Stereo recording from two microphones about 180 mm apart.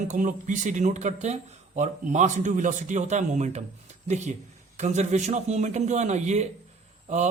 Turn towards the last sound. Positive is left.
turn(degrees=-40)  # may be behind; listen again after turning